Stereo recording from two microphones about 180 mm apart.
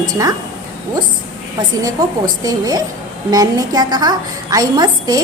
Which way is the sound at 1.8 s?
20° right (ahead or behind).